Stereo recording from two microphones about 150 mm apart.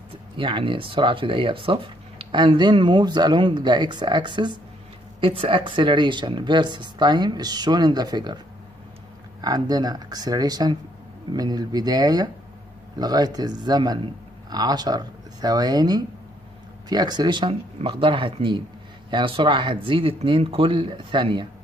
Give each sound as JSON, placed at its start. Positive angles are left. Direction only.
{"t": 0.4, "sound": "speech", "side_deg": -35}
{"t": 9.4, "sound": "speech", "side_deg": -25}